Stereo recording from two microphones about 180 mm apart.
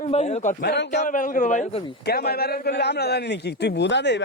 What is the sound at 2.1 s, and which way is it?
Speech, 60° left (ahead or behind).